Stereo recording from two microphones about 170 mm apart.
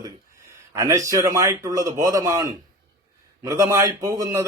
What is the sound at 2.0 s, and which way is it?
A man's voice, 20° right (ahead or behind).